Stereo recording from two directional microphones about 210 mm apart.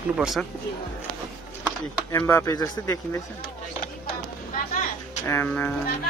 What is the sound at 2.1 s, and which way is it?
A man's voice, 15° left (ahead or behind).